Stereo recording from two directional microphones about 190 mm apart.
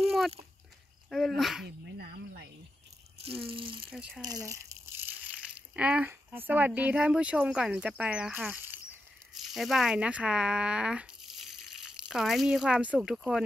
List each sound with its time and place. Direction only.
1.1 s speech: centre (ahead or behind)
2.0 s cricket: 60° right (ahead or behind)
3.3 s speech: 30° right (ahead or behind)
3.9 s speech: 5° right (ahead or behind)
4.2 s speech: 20° right (ahead or behind); by 13.4 s 5° right (ahead or behind)